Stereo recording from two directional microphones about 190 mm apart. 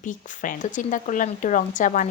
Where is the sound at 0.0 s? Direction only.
45° left (ahead or behind).